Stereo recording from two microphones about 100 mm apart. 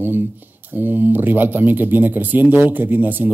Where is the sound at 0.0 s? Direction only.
20° right (ahead or behind).